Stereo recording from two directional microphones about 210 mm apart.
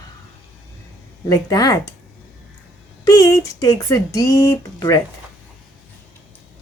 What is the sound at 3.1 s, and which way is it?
Speech, 15° left (ahead or behind).